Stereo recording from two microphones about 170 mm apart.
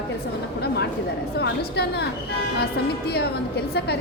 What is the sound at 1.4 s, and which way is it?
A woman's voice, 75° left (ahead or behind).